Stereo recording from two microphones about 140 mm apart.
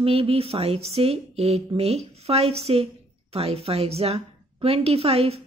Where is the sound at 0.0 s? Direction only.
40° right (ahead or behind).